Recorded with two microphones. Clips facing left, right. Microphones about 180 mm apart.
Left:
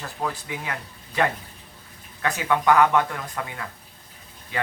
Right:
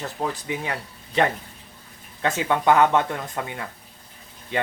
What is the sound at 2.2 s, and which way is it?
Speech, 25° right (ahead or behind).